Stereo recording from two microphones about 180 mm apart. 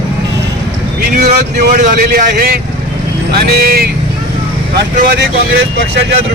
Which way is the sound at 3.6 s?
55° right (ahead or behind).